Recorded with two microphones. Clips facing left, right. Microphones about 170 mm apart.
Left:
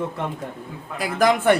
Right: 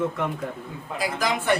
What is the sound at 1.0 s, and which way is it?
Speech, 55° left (ahead or behind).